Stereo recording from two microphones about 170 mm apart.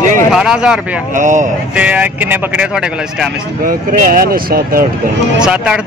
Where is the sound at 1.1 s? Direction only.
50° right (ahead or behind).